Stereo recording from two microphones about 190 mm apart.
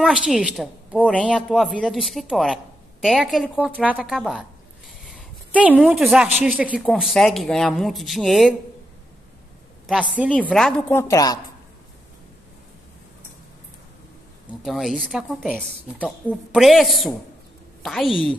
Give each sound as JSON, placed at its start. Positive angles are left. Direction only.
{"t": 0.0, "sound": "a woman's voice", "side_deg": 0}
{"t": 3.8, "sound": "a sound", "side_deg": -5}
{"t": 6.7, "sound": "a woman's voice", "side_deg": 0}
{"t": 9.8, "sound": "a woman's voice", "side_deg": -5}
{"t": 11.0, "sound": "a woman's voice", "side_deg": 15}
{"t": 14.6, "sound": "a woman's voice", "side_deg": 0}